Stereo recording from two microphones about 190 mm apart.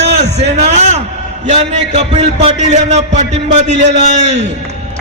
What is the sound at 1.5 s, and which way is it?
A man's voice, 35° right (ahead or behind).